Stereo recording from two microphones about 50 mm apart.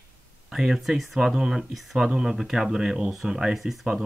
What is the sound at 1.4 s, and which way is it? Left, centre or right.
Speech, centre.